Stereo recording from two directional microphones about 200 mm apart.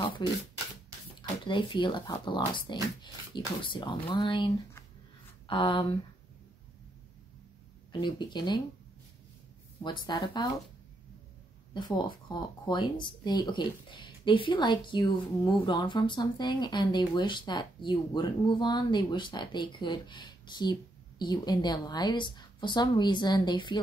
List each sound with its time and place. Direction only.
0.2 s speech: 20° left (ahead or behind)
1.4 s speech: 25° left (ahead or behind)
5.5 s speech: 25° left (ahead or behind)
8.0 s speech: 20° left (ahead or behind)
9.8 s speech: 20° left (ahead or behind)
11.7 s speech: 20° left (ahead or behind)